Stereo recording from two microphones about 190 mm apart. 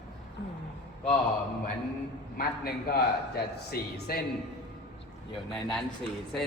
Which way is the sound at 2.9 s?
55° left (ahead or behind).